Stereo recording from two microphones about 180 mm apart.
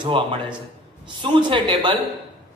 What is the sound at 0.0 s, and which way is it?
A woman's voice, 25° right (ahead or behind).